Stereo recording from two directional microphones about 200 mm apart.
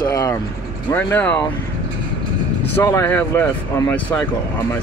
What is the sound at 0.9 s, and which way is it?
Speech, 10° left (ahead or behind).